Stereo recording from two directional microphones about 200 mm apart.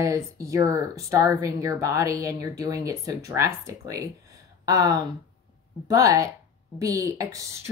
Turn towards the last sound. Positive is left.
turn(degrees=-15)  # may be behind; listen again after turning